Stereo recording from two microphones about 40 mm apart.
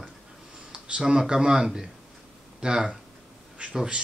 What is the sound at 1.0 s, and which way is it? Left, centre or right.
Speech, centre.